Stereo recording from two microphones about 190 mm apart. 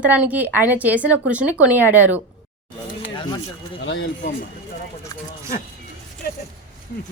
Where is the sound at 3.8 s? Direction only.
70° left (ahead or behind).